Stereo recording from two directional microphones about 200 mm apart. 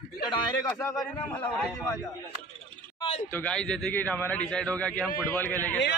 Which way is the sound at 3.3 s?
5° left (ahead or behind).